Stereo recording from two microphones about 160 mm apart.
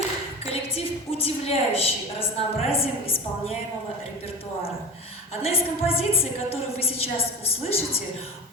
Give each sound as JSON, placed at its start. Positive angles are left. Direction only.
{"t": 1.1, "sound": "a woman's voice", "side_deg": 40}
{"t": 5.4, "sound": "a woman's voice", "side_deg": 35}